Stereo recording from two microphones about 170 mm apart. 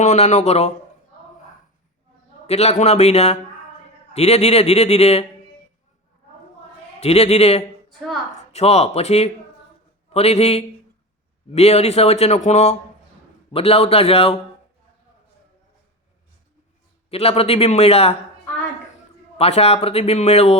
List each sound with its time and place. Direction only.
0.0 s speech: 40° left (ahead or behind)
2.5 s speech: 40° left (ahead or behind)
7.0 s speech: 40° left (ahead or behind)
7.9 s a sound: centre (ahead or behind)
8.5 s speech: 35° left (ahead or behind)
17.1 s speech: 35° left (ahead or behind)
19.4 s speech: 35° left (ahead or behind)